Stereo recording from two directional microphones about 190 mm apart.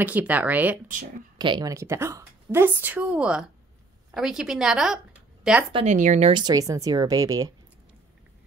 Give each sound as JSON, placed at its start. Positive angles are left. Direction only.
{"t": 0.0, "sound": "a woman's voice", "side_deg": -10}
{"t": 1.4, "sound": "a woman's voice", "side_deg": -20}
{"t": 5.7, "sound": "speech", "side_deg": -30}
{"t": 6.3, "sound": "speech", "side_deg": -20}